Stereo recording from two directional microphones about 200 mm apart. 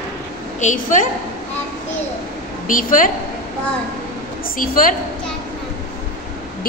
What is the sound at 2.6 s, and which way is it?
Speech, 40° left (ahead or behind).